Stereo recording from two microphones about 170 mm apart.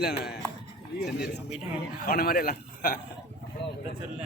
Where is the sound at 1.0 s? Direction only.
70° left (ahead or behind).